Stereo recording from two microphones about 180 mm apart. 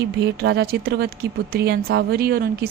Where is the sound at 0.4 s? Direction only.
65° right (ahead or behind).